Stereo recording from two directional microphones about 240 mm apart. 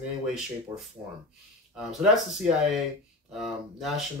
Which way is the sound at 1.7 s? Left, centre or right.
Centre.